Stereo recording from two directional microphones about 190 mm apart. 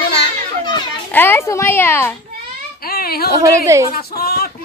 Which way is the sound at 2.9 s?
55° left (ahead or behind).